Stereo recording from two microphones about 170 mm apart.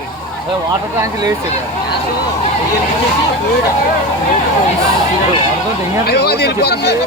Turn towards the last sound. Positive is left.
turn(degrees=75)  # may be behind; listen again after turning